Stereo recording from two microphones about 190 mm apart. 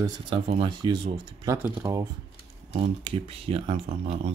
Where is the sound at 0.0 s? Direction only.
30° right (ahead or behind).